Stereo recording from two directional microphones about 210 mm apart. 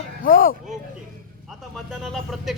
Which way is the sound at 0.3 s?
40° left (ahead or behind).